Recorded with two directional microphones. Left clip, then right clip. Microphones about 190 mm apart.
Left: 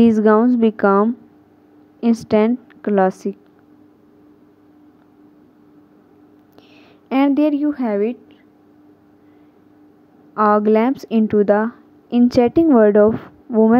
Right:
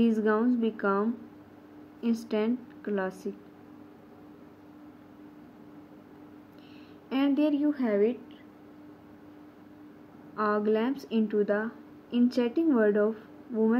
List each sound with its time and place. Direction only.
0.0 s a woman's voice: 50° left (ahead or behind)
7.1 s speech: 55° left (ahead or behind)
10.3 s speech: 50° left (ahead or behind)